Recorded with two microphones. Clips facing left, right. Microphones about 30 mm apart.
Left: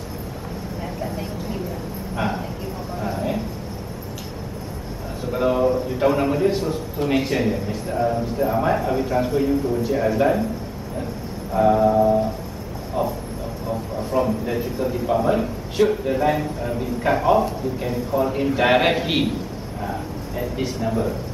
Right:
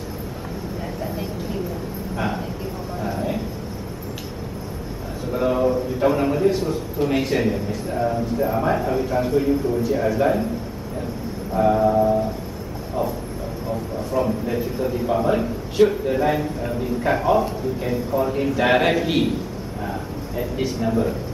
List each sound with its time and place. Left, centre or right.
1.0 s a sound: centre
5.3 s a sound: centre
7.2 s a man's voice: centre
9.8 s a man's voice: centre
11.5 s a man's voice: centre
14.2 s a man's voice: centre
19.9 s a man's voice: centre